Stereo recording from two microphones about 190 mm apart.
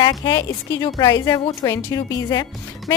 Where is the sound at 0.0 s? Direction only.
20° left (ahead or behind).